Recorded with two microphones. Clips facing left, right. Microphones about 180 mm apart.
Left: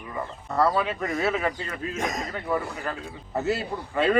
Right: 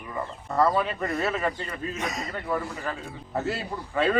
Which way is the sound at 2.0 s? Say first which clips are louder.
Left 4 dB; 45° left (ahead or behind).